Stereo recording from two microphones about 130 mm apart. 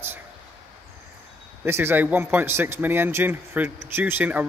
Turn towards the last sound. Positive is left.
turn(degrees=-15)  # may be behind; listen again after turning